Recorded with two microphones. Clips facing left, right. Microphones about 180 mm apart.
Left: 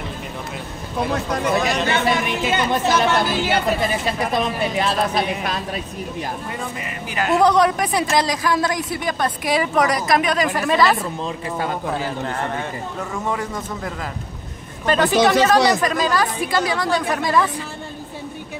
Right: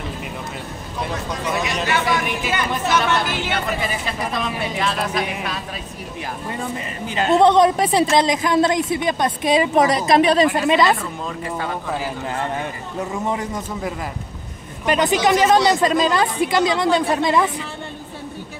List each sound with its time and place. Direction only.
1.9 s speech: 25° left (ahead or behind)
4.7 s a woman's voice: 35° left (ahead or behind)
7.1 s speech: 25° right (ahead or behind)
11.2 s a woman's voice: 30° left (ahead or behind)
13.1 s speech: 20° right (ahead or behind)